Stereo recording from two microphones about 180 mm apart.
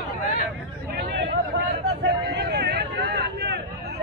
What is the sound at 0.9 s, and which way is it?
Chatter, 65° right (ahead or behind).